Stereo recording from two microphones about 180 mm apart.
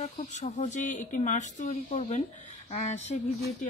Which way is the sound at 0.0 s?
40° left (ahead or behind).